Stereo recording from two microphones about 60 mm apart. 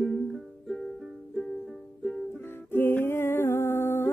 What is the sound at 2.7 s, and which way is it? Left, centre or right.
Humming, left.